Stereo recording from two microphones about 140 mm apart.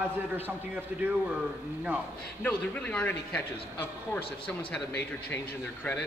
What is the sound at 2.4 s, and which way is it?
A man's voice, 10° left (ahead or behind).